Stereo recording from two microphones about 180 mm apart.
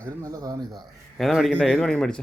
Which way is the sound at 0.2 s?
20° right (ahead or behind).